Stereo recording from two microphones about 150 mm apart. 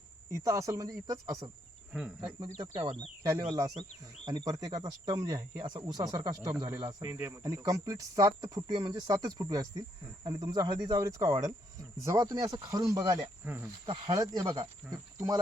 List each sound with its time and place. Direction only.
0.3 s speech: 20° right (ahead or behind)
1.9 s speech: 5° right (ahead or behind)
3.2 s speech: 25° right (ahead or behind)
13.8 s speech: 30° right (ahead or behind)